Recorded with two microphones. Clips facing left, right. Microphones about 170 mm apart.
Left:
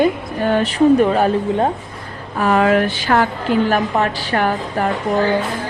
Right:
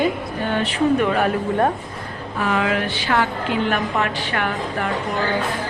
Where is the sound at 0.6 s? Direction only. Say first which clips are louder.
Left 6 dB; 35° left (ahead or behind).